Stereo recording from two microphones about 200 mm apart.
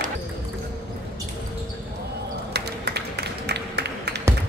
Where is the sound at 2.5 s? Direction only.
55° right (ahead or behind).